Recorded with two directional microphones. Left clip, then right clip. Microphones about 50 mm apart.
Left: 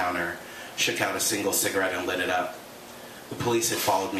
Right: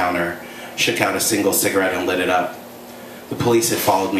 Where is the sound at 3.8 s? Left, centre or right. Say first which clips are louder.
Right 7 dB; left.